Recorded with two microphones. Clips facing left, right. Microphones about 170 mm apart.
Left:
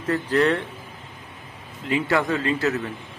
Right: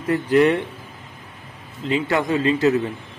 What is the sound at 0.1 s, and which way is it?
Speech, 10° right (ahead or behind).